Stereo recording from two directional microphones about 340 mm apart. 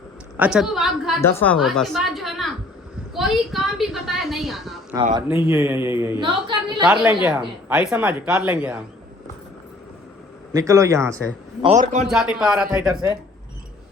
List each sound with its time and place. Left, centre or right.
0.3 s a woman's voice: centre
3.2 s a sound: centre
4.9 s speech: centre
10.5 s speech: centre
11.6 s a man's voice: right
12.0 s speech: centre